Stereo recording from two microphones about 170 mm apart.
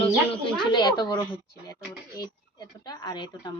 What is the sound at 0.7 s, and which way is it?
Speech, 25° left (ahead or behind).